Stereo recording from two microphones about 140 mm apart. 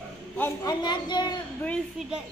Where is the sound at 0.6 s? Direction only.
30° left (ahead or behind).